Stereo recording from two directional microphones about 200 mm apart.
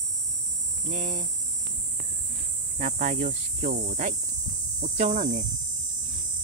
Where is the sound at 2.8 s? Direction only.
40° right (ahead or behind).